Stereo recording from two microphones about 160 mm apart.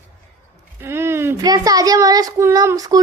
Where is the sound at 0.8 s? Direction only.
15° right (ahead or behind).